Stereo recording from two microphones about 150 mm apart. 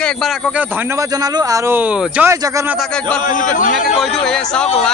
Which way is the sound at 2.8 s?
5° left (ahead or behind).